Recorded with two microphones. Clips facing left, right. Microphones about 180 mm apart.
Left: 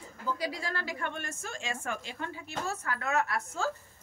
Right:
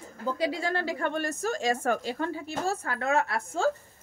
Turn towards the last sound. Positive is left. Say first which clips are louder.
# right 5 dB
turn(degrees=-30)  # may be behind; listen again after turning